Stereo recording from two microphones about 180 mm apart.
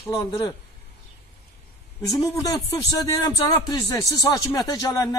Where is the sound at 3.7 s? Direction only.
20° left (ahead or behind).